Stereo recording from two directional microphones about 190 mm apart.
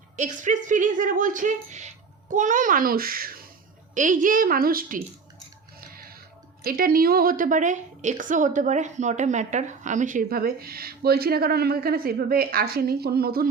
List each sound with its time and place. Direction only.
0.2 s a woman's voice: 40° right (ahead or behind)
5.9 s a sound: 50° right (ahead or behind)
6.7 s a woman's voice: 50° right (ahead or behind)